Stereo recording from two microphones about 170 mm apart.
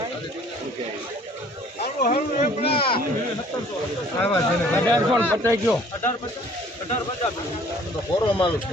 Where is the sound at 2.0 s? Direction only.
60° left (ahead or behind).